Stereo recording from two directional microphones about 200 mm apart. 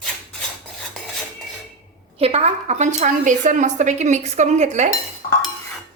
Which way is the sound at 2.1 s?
30° right (ahead or behind).